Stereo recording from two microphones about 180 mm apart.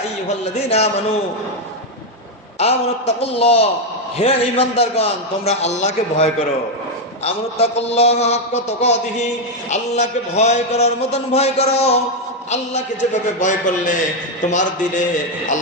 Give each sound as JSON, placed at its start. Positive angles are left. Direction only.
{"t": 0.3, "sound": "a man's voice", "side_deg": 40}
{"t": 2.6, "sound": "a man's voice", "side_deg": 35}
{"t": 13.4, "sound": "a man's voice", "side_deg": 45}